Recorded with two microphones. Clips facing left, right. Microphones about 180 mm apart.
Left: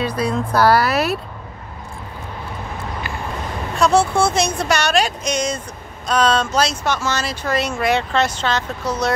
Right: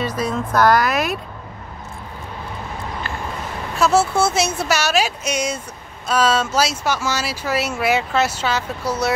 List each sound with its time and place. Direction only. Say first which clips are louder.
0.3 s speech: even; 5° left (ahead or behind)
0.7 s speech: left 1 dB; 35° left (ahead or behind)
3.7 s speech: left 1 dB; 5° right (ahead or behind)